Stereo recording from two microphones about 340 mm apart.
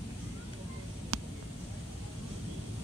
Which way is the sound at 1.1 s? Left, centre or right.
Right.